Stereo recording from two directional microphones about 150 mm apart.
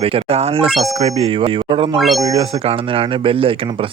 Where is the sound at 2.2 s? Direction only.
30° right (ahead or behind).